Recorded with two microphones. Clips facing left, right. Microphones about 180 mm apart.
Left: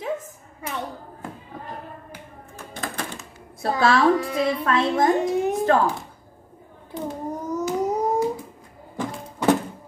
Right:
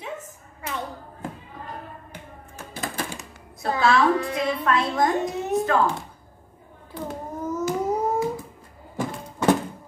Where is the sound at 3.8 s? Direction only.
30° left (ahead or behind).